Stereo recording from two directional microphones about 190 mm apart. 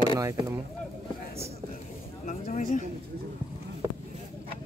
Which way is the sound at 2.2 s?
40° left (ahead or behind).